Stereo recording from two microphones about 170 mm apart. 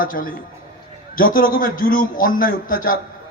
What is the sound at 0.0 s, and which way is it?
A man's voice, 55° left (ahead or behind).